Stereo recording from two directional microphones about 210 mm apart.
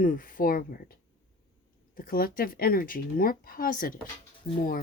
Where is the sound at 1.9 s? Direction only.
45° left (ahead or behind).